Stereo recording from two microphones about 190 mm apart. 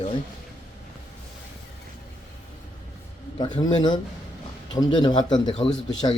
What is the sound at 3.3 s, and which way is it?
Speech, 20° left (ahead or behind).